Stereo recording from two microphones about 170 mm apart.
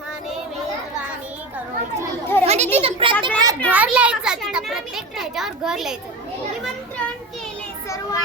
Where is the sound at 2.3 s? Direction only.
15° left (ahead or behind).